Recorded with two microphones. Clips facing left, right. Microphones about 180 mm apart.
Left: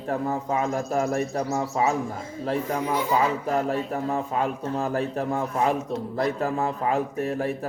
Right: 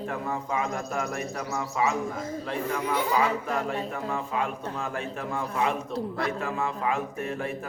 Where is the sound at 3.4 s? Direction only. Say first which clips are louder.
Left 5 dB; 35° left (ahead or behind).